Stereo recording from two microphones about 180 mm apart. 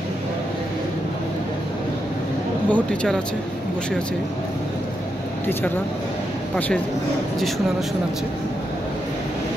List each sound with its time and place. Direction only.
2.7 s speech: 5° left (ahead or behind)
7.3 s speech: centre (ahead or behind)